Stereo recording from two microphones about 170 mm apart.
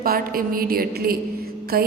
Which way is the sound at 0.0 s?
60° right (ahead or behind).